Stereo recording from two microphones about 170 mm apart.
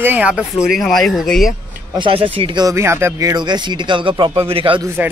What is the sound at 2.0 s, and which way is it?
Speech, 30° right (ahead or behind).